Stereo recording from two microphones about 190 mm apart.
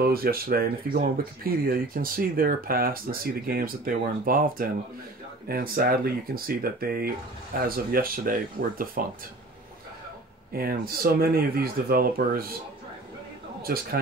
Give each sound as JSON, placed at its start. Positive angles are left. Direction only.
{"t": 0.0, "sound": "speech", "side_deg": -50}
{"t": 10.5, "sound": "speech", "side_deg": -50}
{"t": 13.6, "sound": "speech", "side_deg": -50}